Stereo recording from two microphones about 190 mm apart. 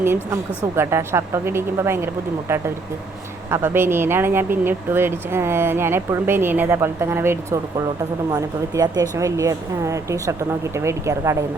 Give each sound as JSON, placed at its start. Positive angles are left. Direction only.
{"t": 0.0, "sound": "speech", "side_deg": -15}